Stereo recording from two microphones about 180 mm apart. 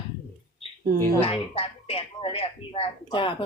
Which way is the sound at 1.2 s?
30° left (ahead or behind).